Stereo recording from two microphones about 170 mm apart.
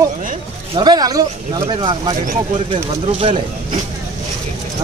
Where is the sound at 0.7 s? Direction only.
25° right (ahead or behind).